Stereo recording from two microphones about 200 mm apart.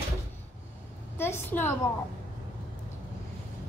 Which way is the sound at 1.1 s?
10° left (ahead or behind).